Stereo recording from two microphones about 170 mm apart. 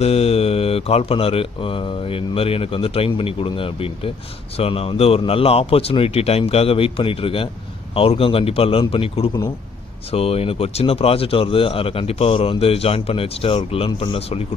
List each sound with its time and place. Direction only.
0.0 s speech: 35° left (ahead or behind)